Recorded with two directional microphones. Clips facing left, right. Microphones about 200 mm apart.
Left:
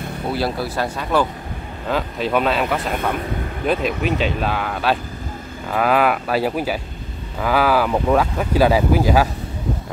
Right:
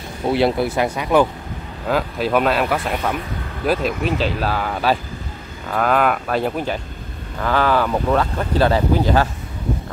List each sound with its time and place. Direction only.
0.3 s speech: 25° right (ahead or behind)
1.9 s speech: 5° right (ahead or behind); by 9.3 s 10° left (ahead or behind)